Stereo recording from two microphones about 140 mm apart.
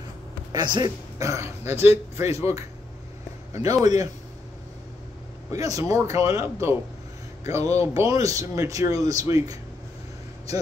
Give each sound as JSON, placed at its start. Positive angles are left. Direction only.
{"t": 0.5, "sound": "speech", "side_deg": -30}
{"t": 1.2, "sound": "speech", "side_deg": -20}
{"t": 5.5, "sound": "speech", "side_deg": -25}
{"t": 7.8, "sound": "speech", "side_deg": -20}